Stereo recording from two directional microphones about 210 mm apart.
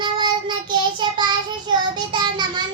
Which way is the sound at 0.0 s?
20° right (ahead or behind).